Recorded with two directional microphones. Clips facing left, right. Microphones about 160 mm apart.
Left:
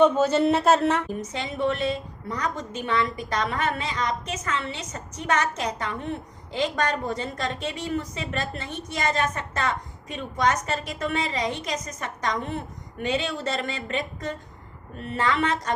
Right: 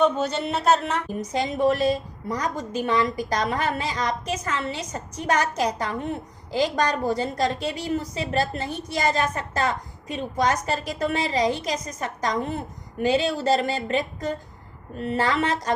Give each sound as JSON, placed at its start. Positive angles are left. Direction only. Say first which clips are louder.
{"t": 1.2, "sound": "a woman's voice", "louder": "right 5 dB", "side_deg": -40}